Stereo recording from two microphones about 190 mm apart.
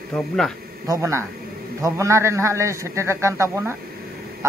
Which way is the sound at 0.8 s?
15° right (ahead or behind).